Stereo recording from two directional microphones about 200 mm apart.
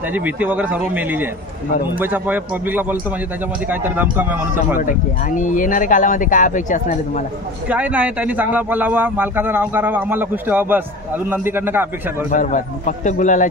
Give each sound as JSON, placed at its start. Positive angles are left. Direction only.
{"t": 0.1, "sound": "speech", "side_deg": -10}
{"t": 4.7, "sound": "speech", "side_deg": 40}
{"t": 7.6, "sound": "speech", "side_deg": -5}
{"t": 12.3, "sound": "speech", "side_deg": 40}